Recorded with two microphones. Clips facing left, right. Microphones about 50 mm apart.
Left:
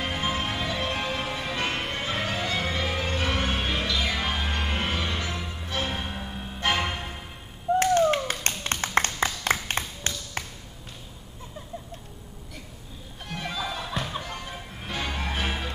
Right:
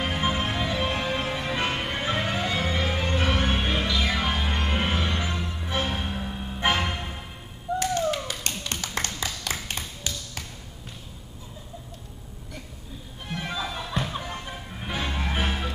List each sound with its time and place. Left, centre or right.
0.0 s music: centre
7.7 s music: left
8.3 s tap: left
8.8 s a sound: left
9.7 s tap: left
13.3 s music: centre